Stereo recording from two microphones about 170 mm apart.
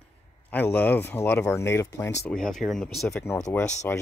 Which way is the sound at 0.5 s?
10° left (ahead or behind).